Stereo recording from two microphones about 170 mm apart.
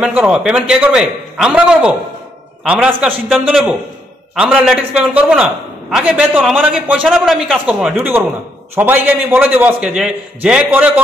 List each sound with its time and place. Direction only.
0.0 s a man's voice: 10° right (ahead or behind)